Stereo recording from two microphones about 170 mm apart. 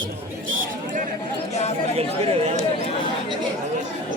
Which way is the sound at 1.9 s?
35° right (ahead or behind).